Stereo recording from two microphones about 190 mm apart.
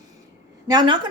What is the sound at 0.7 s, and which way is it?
Speech, 25° right (ahead or behind).